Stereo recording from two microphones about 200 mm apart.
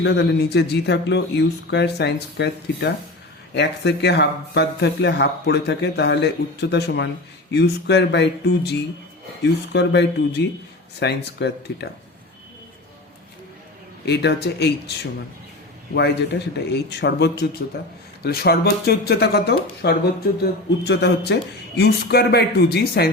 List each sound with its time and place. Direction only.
0.0 s speech: 60° left (ahead or behind)
14.0 s speech: 55° left (ahead or behind)
16.0 s speech: 55° left (ahead or behind)